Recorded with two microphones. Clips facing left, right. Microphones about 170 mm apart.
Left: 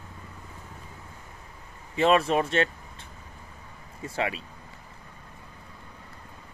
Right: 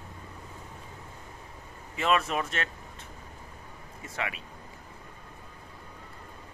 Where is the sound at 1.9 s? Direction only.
30° left (ahead or behind).